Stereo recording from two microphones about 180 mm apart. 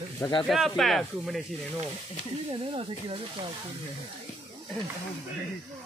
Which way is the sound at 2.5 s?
30° right (ahead or behind).